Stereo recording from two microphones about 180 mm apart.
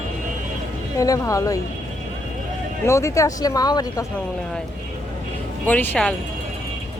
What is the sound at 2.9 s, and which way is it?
Speech, 15° left (ahead or behind).